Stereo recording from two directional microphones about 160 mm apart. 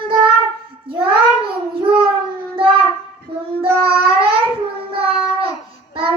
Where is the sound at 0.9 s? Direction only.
35° right (ahead or behind).